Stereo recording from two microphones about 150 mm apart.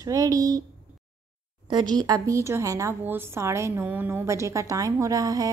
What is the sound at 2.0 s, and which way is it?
A woman's voice, 25° right (ahead or behind).